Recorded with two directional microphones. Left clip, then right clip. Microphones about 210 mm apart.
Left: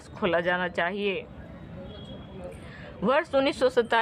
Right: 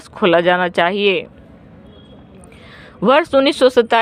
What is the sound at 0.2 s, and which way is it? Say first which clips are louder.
Speech: right 12 dB; 40° right (ahead or behind).